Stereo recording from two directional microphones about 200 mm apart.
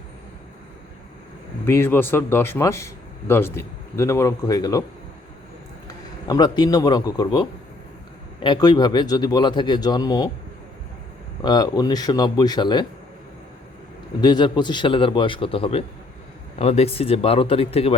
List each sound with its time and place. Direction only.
1.6 s speech: 10° left (ahead or behind)
6.2 s speech: 20° left (ahead or behind)
11.4 s speech: 20° left (ahead or behind)
14.2 s speech: 20° left (ahead or behind)